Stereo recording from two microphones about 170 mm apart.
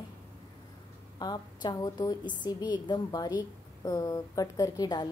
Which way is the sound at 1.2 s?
25° left (ahead or behind).